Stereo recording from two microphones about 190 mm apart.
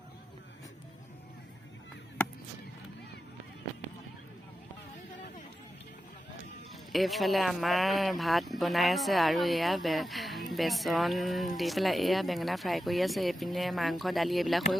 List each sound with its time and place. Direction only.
6.9 s speech: centre (ahead or behind)